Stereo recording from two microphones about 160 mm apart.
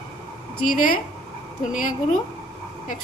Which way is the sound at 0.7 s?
60° left (ahead or behind).